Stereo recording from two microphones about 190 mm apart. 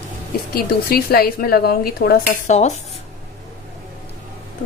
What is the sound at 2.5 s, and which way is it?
Cutlery, 40° left (ahead or behind).